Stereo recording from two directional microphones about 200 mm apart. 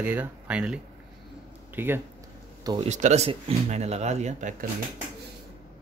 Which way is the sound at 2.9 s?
35° right (ahead or behind).